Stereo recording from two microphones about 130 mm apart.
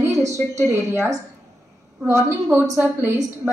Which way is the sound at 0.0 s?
25° right (ahead or behind).